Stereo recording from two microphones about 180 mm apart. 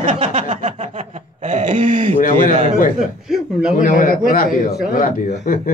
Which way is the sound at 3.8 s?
50° left (ahead or behind).